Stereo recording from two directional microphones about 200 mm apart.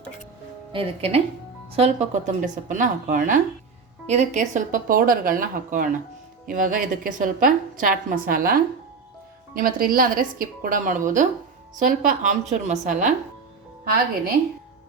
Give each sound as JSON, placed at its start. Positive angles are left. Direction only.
{"t": 0.7, "sound": "a woman's voice", "side_deg": -30}